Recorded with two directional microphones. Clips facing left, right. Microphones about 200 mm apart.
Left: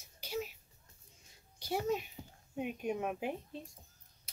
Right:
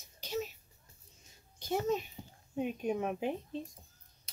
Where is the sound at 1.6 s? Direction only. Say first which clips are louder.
Right 2 dB; 50° right (ahead or behind).